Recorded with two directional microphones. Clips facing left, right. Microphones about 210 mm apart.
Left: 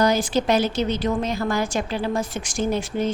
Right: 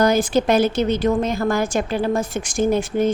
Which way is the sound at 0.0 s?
50° right (ahead or behind).